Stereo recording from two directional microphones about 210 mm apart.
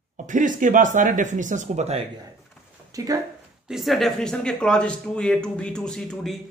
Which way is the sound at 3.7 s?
Centre (ahead or behind).